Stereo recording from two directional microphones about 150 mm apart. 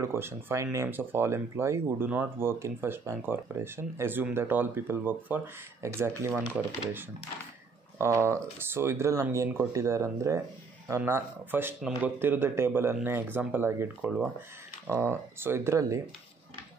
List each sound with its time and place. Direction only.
0.0 s speech: 15° right (ahead or behind)